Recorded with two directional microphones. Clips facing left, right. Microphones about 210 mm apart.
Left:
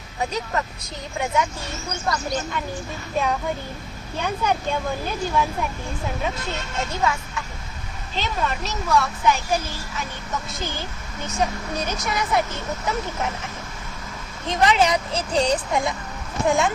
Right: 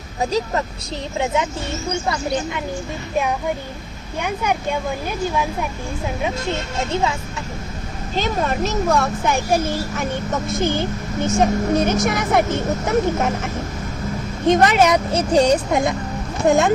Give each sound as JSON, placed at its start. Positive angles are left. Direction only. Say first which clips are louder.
{"t": 0.2, "sound": "speech", "louder": "right 5 dB", "side_deg": -30}
{"t": 2.1, "sound": "speech", "louder": "right 4 dB", "side_deg": -10}
{"t": 4.2, "sound": "speech", "louder": "right 2 dB", "side_deg": -15}
{"t": 6.9, "sound": "speech", "louder": "right 3 dB", "side_deg": -25}
{"t": 8.1, "sound": "a child's voice", "louder": "right 5 dB", "side_deg": -45}
{"t": 14.4, "sound": "a child's voice", "louder": "right 5 dB", "side_deg": -50}